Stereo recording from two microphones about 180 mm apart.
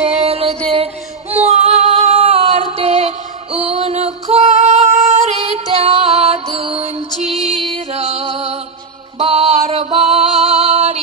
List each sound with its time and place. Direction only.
0.2 s music: 30° right (ahead or behind)